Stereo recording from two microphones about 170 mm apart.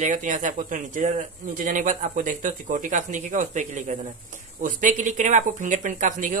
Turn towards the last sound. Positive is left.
turn(degrees=-50)  # may be behind; listen again after turning